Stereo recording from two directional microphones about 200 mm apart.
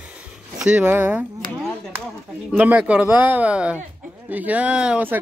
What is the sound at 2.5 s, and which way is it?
Speech, 10° right (ahead or behind).